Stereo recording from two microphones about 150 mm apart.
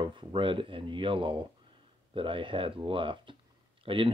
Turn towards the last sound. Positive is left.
turn(degrees=-35)  # may be behind; listen again after turning